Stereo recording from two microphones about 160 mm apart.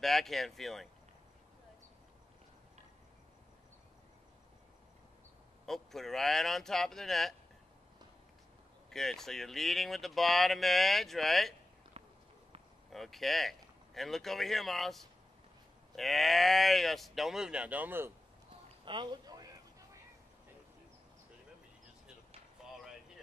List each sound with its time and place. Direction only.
0.0 s speech: centre (ahead or behind)
5.7 s speech: centre (ahead or behind)
8.9 s speech: centre (ahead or behind)
12.9 s speech: centre (ahead or behind)
18.9 s a sound: 25° right (ahead or behind)
22.6 s a sound: 5° right (ahead or behind)